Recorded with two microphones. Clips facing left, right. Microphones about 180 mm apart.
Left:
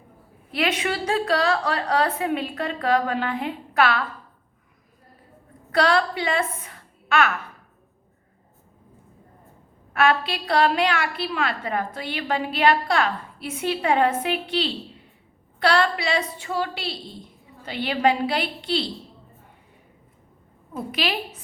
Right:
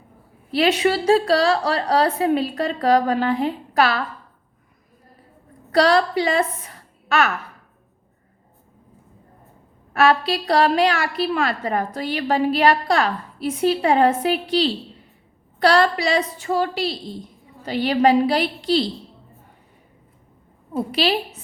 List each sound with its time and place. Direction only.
0.5 s a woman's voice: 35° right (ahead or behind)
5.7 s a woman's voice: 40° right (ahead or behind)
9.9 s a woman's voice: 40° right (ahead or behind)
20.7 s a woman's voice: 30° right (ahead or behind)